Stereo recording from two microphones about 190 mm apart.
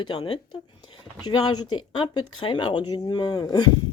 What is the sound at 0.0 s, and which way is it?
Speech, 25° left (ahead or behind).